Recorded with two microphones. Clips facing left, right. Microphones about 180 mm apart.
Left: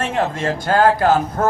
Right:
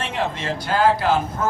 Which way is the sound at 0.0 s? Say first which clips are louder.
Left 5 dB; 45° left (ahead or behind).